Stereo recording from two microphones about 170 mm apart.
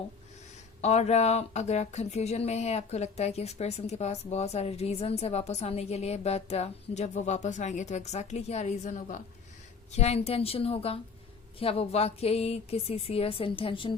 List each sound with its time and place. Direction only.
0.8 s speech: 40° left (ahead or behind)